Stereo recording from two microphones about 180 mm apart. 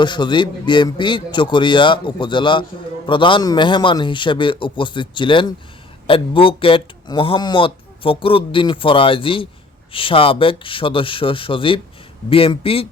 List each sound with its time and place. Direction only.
0.0 s speech: 25° left (ahead or behind)